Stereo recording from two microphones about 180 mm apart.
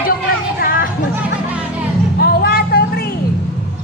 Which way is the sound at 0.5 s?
50° left (ahead or behind).